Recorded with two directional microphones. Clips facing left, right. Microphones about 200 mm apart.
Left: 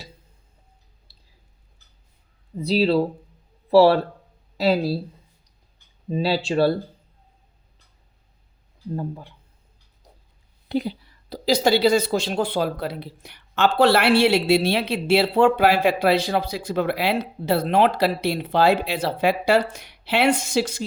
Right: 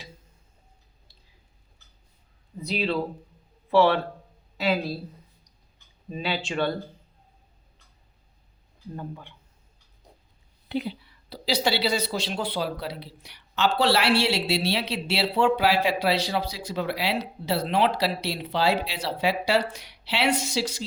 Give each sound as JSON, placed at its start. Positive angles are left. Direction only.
{"t": 1.1, "sound": "squish", "side_deg": 35}
{"t": 2.6, "sound": "speech", "side_deg": 35}
{"t": 6.1, "sound": "speech", "side_deg": 35}
{"t": 9.0, "sound": "speech", "side_deg": 35}
{"t": 10.7, "sound": "a woman's voice", "side_deg": 40}